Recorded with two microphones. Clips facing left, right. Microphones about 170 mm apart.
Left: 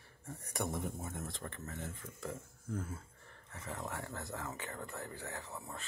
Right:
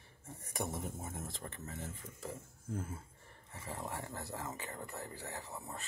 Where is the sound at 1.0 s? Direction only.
25° right (ahead or behind).